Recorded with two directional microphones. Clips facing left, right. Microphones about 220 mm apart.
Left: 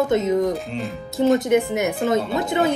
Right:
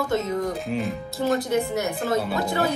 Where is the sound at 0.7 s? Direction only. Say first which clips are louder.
Right 2 dB; centre (ahead or behind).